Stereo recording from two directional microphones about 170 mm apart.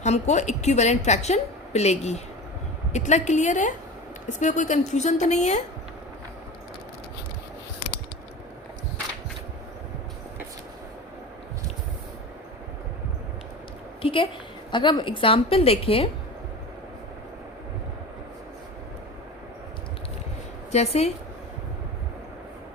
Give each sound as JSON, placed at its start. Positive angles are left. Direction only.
{"t": 0.0, "sound": "a woman's voice", "side_deg": 40}
{"t": 14.0, "sound": "a sound", "side_deg": 30}
{"t": 14.7, "sound": "a woman's voice", "side_deg": 25}
{"t": 20.7, "sound": "a woman's voice", "side_deg": 40}